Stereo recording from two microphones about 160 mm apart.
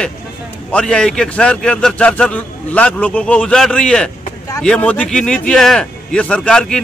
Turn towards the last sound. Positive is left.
turn(degrees=5)  # may be behind; listen again after turning